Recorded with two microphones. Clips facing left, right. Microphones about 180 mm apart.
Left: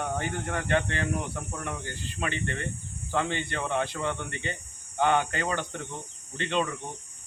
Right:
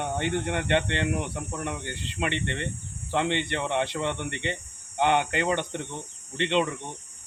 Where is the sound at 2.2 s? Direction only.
20° right (ahead or behind).